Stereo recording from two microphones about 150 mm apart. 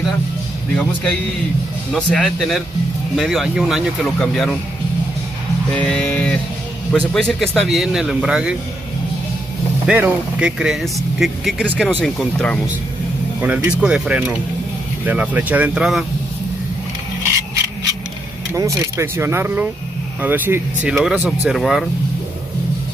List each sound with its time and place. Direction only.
2.0 s speech: 5° left (ahead or behind)
5.7 s music: 10° left (ahead or behind)
6.9 s speech: 5° left (ahead or behind)
9.8 s speech: 10° right (ahead or behind)
13.4 s speech: 10° right (ahead or behind)
18.5 s speech: 20° right (ahead or behind); by 21.8 s centre (ahead or behind)